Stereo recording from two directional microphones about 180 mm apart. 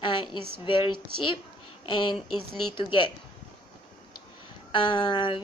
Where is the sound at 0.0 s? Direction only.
25° left (ahead or behind).